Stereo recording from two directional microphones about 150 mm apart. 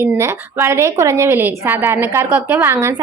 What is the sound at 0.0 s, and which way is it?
A woman's voice, 15° right (ahead or behind).